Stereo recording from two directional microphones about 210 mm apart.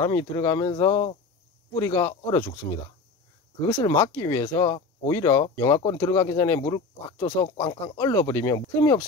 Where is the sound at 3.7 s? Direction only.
20° left (ahead or behind).